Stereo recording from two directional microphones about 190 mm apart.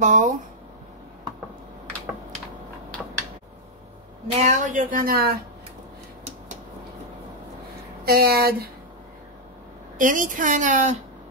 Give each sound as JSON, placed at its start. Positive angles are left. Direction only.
{"t": 0.0, "sound": "speech", "side_deg": -40}
{"t": 4.4, "sound": "speech", "side_deg": -40}
{"t": 8.0, "sound": "speech", "side_deg": -55}
{"t": 9.9, "sound": "a woman's voice", "side_deg": -45}